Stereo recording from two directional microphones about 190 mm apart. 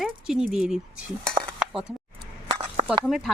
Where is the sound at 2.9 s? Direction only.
Centre (ahead or behind).